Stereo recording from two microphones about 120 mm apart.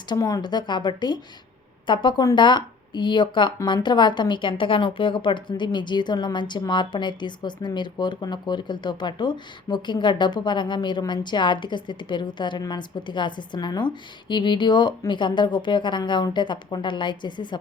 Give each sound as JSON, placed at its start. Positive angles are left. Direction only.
{"t": 0.1, "sound": "a woman's voice", "side_deg": 30}